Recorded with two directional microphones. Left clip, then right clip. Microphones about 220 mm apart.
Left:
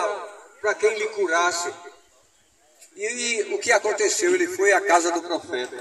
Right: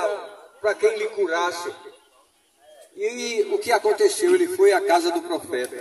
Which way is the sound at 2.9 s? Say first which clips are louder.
Right 1 dB; 30° left (ahead or behind).